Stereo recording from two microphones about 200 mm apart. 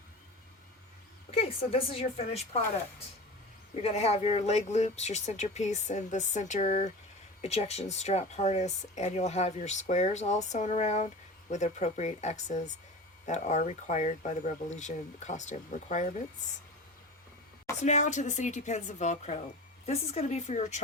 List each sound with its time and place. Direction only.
1.3 s speech: 30° left (ahead or behind)
3.8 s speech: 30° left (ahead or behind)
17.8 s speech: 35° left (ahead or behind)